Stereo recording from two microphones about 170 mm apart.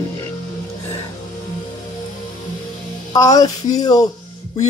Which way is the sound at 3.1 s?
20° left (ahead or behind).